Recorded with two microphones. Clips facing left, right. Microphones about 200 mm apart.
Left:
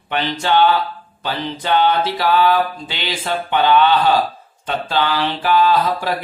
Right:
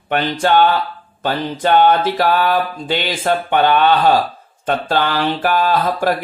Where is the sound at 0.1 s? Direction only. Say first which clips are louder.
Right 3 dB; 50° right (ahead or behind).